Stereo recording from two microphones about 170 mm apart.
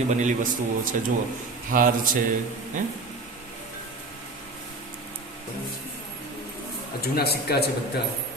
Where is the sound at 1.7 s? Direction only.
55° right (ahead or behind).